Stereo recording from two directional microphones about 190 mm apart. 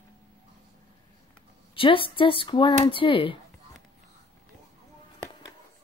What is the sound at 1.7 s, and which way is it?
Speech, 30° left (ahead or behind).